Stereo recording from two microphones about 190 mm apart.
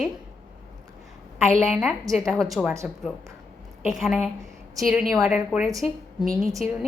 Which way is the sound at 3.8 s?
Centre (ahead or behind).